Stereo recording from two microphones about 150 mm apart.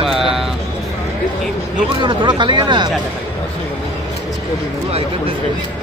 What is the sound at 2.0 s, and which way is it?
Speech, 30° right (ahead or behind).